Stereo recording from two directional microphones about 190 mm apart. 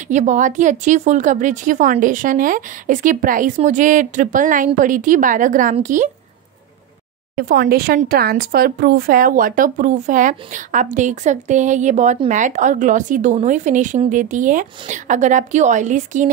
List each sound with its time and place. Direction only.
0.1 s speech: 40° right (ahead or behind)
7.3 s a woman's voice: 50° right (ahead or behind)